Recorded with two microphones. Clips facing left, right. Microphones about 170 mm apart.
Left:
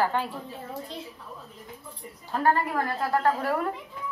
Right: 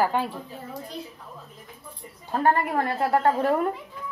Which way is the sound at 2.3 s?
25° right (ahead or behind).